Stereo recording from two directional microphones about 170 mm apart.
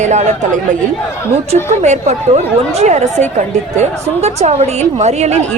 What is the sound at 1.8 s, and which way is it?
Speech, 40° right (ahead or behind).